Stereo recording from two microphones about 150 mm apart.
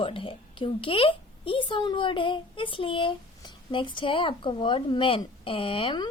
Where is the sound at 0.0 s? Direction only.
35° left (ahead or behind).